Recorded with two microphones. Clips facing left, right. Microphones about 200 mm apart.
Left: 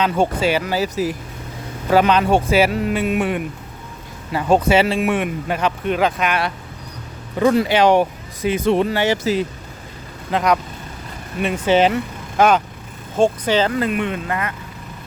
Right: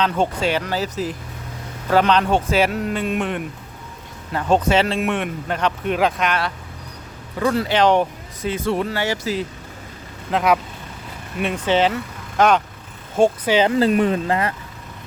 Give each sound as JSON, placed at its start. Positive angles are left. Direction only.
{"t": 0.0, "sound": "speech", "side_deg": 10}
{"t": 7.3, "sound": "speech", "side_deg": 20}
{"t": 10.3, "sound": "speech", "side_deg": -5}
{"t": 13.1, "sound": "speech", "side_deg": -10}
{"t": 13.7, "sound": "speech", "side_deg": -30}